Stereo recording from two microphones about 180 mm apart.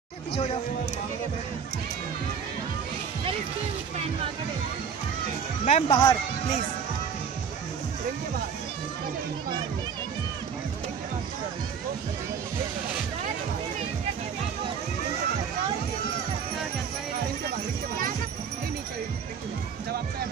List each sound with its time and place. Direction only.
5.7 s speech: 35° left (ahead or behind)